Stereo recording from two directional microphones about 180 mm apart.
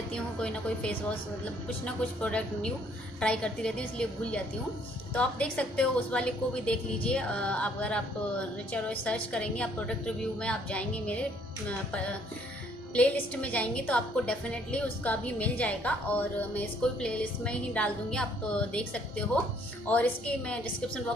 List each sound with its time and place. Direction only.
0.1 s a woman's voice: 5° left (ahead or behind)